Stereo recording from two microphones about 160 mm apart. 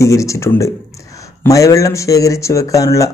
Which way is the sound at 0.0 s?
20° left (ahead or behind).